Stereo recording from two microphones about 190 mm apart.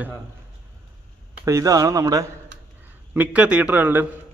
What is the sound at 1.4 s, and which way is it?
A man's voice, 20° right (ahead or behind).